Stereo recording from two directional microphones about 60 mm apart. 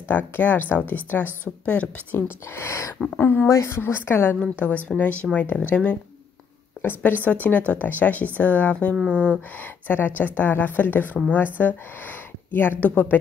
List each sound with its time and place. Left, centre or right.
0.1 s speech: left
2.1 s a woman's voice: left
3.4 s a woman's voice: left
4.6 s speech: left
6.8 s speech: left; by 9.4 s centre
9.8 s a woman's voice: left